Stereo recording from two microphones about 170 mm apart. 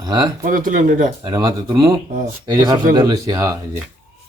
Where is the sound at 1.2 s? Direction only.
25° right (ahead or behind).